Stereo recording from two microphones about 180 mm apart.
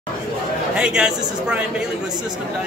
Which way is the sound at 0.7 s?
5° right (ahead or behind).